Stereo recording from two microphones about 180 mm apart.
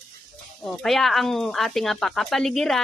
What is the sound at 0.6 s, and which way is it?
Speech, centre (ahead or behind).